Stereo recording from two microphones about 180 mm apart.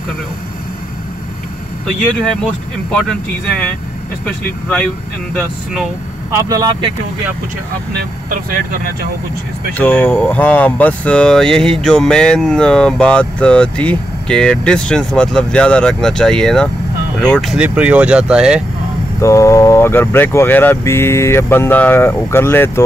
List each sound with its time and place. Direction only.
2.4 s speech: 5° left (ahead or behind)
6.3 s speech: 20° right (ahead or behind)
7.9 s speech: 55° right (ahead or behind)
9.8 s speech: 10° left (ahead or behind)
19.1 s speech: 15° left (ahead or behind)